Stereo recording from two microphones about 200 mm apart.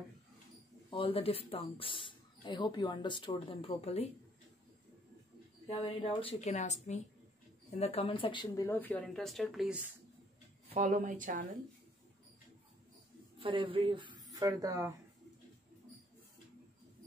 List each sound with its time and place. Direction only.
0.8 s speech: 25° left (ahead or behind)
5.7 s a woman's voice: 25° left (ahead or behind)
8.6 s speech: 10° left (ahead or behind)
10.7 s speech: 35° right (ahead or behind)
13.4 s speech: 25° right (ahead or behind)